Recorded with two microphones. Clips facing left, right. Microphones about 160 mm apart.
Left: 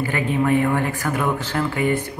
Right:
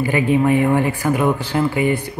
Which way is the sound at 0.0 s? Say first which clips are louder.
Right 5 dB; 15° right (ahead or behind).